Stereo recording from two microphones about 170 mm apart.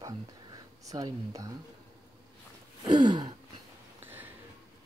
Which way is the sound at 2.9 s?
25° right (ahead or behind).